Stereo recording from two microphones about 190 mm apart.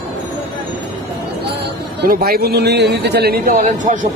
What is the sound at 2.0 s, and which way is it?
A man's voice, 50° right (ahead or behind).